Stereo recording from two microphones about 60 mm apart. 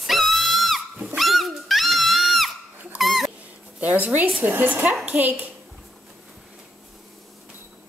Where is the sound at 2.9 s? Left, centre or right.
Centre.